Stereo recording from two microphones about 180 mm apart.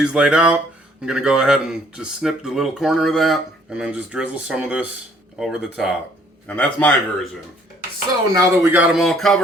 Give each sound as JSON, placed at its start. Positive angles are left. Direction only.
{"t": 0.0, "sound": "speech", "side_deg": -5}
{"t": 6.5, "sound": "speech", "side_deg": 10}
{"t": 8.3, "sound": "speech", "side_deg": -10}
{"t": 9.0, "sound": "speech", "side_deg": 0}